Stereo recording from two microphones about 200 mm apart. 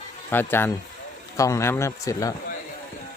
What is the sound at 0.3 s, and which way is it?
Speech, 10° left (ahead or behind).